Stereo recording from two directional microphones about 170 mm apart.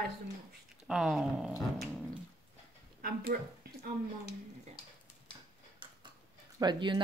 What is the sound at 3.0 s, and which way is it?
Speech, 60° right (ahead or behind).